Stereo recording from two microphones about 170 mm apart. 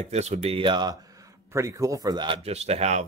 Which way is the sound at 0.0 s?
40° right (ahead or behind).